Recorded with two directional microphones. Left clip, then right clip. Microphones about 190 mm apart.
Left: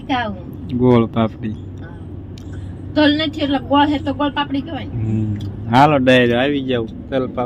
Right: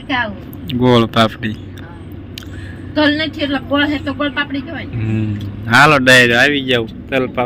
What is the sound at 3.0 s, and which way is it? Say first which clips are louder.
Speech: right 2 dB; 40° left (ahead or behind).